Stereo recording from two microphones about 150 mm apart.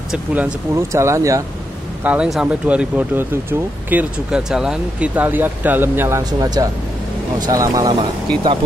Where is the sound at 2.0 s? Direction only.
10° right (ahead or behind).